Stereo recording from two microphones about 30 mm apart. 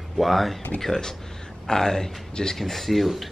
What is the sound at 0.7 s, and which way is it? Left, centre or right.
A man's voice, centre.